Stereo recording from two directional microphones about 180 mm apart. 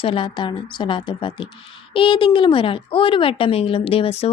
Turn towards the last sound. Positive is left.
turn(degrees=30)  # may be behind; listen again after turning